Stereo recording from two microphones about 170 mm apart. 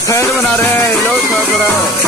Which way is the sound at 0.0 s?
20° left (ahead or behind).